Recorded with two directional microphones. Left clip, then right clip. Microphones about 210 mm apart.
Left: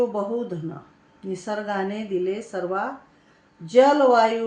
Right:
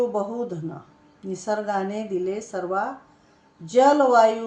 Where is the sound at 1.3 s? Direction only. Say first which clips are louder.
Right 2 dB; 15° right (ahead or behind).